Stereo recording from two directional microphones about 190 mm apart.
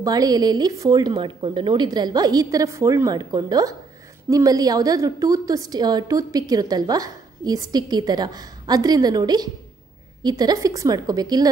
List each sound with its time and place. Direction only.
0.0 s a woman's voice: 20° right (ahead or behind)